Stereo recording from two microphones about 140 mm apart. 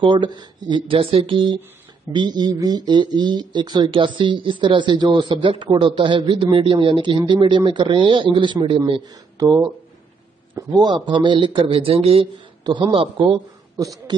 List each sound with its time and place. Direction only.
0.0 s a man's voice: 35° right (ahead or behind)